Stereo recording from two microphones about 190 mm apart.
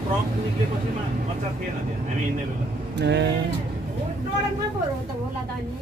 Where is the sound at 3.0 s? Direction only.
65° right (ahead or behind).